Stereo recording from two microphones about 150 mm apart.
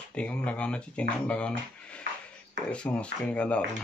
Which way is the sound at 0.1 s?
10° left (ahead or behind).